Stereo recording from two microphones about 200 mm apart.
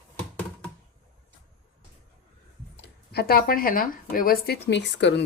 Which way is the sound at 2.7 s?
55° left (ahead or behind).